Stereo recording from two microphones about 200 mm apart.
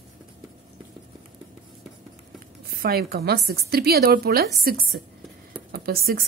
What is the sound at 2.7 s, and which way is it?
A woman's voice, 50° right (ahead or behind).